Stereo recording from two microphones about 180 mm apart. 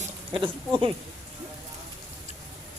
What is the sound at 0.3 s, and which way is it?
Speech, 30° right (ahead or behind).